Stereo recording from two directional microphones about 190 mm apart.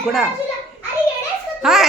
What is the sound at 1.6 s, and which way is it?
Music, centre (ahead or behind).